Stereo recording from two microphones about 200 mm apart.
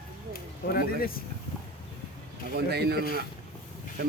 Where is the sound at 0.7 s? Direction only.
50° left (ahead or behind).